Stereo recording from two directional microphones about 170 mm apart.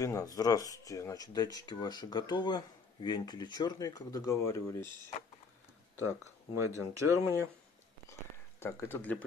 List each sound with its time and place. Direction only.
0.0 s speech: 20° left (ahead or behind)
5.9 s speech: 15° right (ahead or behind)
8.1 s a sound: 15° left (ahead or behind)